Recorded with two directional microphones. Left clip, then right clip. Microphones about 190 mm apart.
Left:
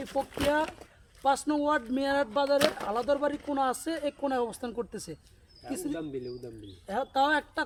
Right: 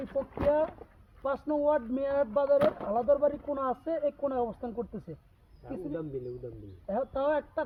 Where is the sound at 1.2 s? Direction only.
30° left (ahead or behind).